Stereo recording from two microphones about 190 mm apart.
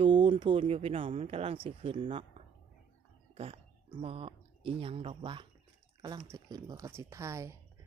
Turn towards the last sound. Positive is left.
turn(degrees=-15)  # may be behind; listen again after turning